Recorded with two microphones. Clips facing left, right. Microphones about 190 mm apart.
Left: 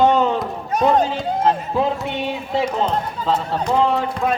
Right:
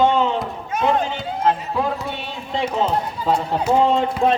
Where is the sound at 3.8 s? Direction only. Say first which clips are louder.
Right 1 dB; 20° right (ahead or behind).